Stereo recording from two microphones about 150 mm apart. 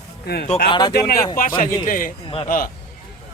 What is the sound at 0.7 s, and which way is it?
Speech, 30° left (ahead or behind).